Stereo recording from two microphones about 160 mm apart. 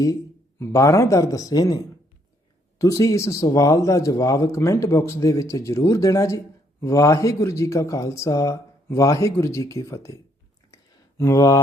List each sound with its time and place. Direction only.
0.6 s speech: 20° left (ahead or behind)
11.2 s speech: 20° left (ahead or behind)